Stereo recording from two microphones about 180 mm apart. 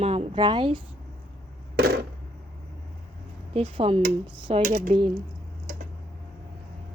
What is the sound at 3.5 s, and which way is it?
A woman's voice, 30° right (ahead or behind).